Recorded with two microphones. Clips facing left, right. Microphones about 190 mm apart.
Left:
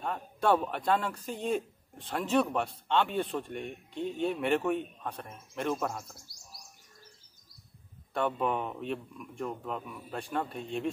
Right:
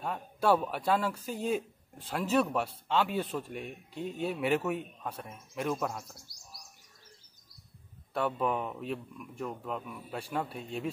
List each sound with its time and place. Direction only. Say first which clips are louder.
0.0 s a man's voice: even; 5° right (ahead or behind)
8.1 s a man's voice: left 1 dB; centre (ahead or behind)